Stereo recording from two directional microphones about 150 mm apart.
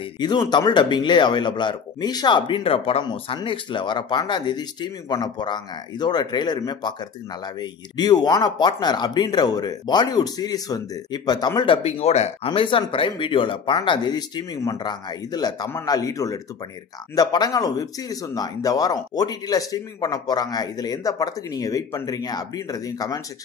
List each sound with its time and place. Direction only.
0.2 s speech: 30° left (ahead or behind)
8.0 s speech: 25° left (ahead or behind); by 12.4 s 45° left (ahead or behind)
12.4 s speech: 35° left (ahead or behind)